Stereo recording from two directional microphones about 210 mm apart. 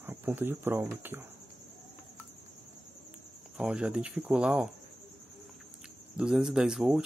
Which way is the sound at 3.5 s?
5° right (ahead or behind).